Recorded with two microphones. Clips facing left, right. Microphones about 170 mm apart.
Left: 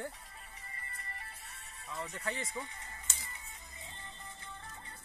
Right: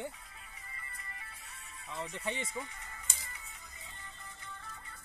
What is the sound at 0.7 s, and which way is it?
Music, 40° left (ahead or behind).